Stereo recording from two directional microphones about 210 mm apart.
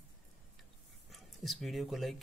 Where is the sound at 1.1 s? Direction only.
Centre (ahead or behind).